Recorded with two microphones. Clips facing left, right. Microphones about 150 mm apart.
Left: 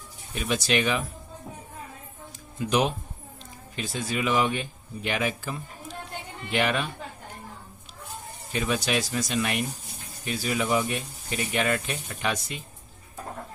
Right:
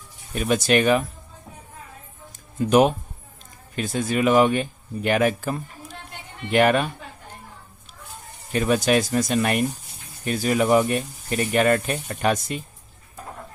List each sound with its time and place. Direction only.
0.3 s speech: 50° right (ahead or behind)
2.6 s speech: 50° right (ahead or behind)
8.5 s speech: 50° right (ahead or behind)